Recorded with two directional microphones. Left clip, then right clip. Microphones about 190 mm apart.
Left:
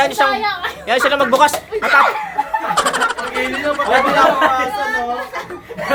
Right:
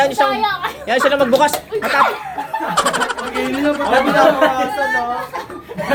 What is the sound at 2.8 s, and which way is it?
Vehicle, centre (ahead or behind).